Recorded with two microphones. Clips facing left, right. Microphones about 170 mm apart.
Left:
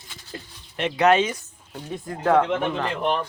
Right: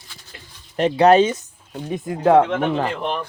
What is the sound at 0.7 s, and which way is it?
Speech, 35° right (ahead or behind).